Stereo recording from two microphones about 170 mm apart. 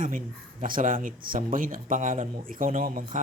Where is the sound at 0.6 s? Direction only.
50° right (ahead or behind).